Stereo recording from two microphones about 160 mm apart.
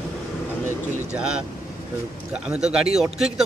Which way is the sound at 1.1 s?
5° right (ahead or behind).